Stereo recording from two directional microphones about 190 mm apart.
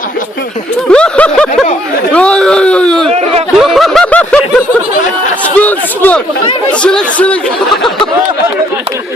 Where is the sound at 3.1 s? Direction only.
35° right (ahead or behind).